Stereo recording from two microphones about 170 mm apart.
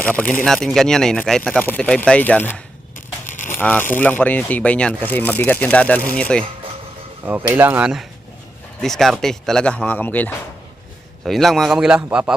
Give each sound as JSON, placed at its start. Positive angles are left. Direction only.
{"t": 0.0, "sound": "speech", "side_deg": 10}
{"t": 3.2, "sound": "a sound", "side_deg": 50}
{"t": 3.6, "sound": "speech", "side_deg": 10}
{"t": 7.5, "sound": "speech", "side_deg": -10}